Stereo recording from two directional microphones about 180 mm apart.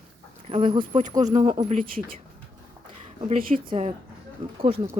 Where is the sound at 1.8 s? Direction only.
50° right (ahead or behind).